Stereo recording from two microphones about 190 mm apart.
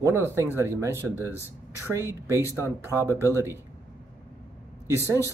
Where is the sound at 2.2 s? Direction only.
15° right (ahead or behind).